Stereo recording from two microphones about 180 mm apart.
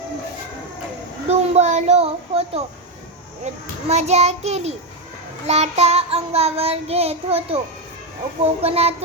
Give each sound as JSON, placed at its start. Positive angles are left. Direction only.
{"t": 1.3, "sound": "child singing", "side_deg": -40}